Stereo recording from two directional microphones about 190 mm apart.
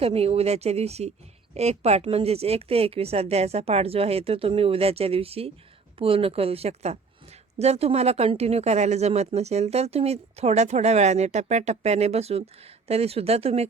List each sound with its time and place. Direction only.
0.0 s speech: 30° right (ahead or behind)